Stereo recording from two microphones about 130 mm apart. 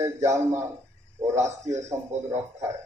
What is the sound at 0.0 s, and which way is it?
Speech, 25° right (ahead or behind).